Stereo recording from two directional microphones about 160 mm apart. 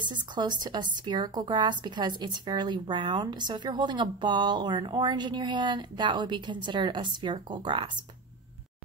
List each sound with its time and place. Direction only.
0.0 s speech: 30° right (ahead or behind)